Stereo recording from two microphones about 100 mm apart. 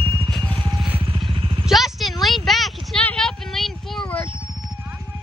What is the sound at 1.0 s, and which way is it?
Vehicle, 60° right (ahead or behind).